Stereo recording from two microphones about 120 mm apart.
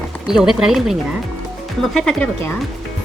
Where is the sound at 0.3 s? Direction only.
5° right (ahead or behind).